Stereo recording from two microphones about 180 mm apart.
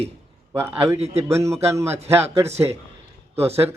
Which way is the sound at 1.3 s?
15° right (ahead or behind).